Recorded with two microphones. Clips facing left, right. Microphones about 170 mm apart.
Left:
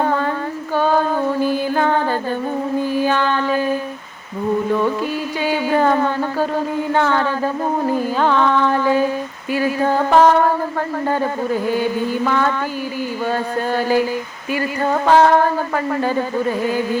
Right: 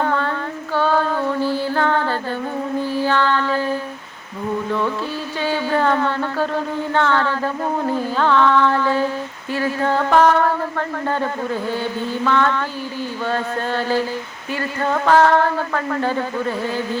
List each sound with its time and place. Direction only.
0.0 s female singing: 15° left (ahead or behind)
0.8 s music: 15° left (ahead or behind)
2.8 s a sound: 15° left (ahead or behind)
4.7 s speech: 15° left (ahead or behind)